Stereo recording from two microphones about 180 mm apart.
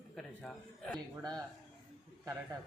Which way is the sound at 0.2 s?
5° left (ahead or behind).